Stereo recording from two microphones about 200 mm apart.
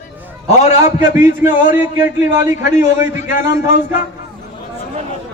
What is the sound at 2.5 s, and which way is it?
A man's voice, 40° left (ahead or behind).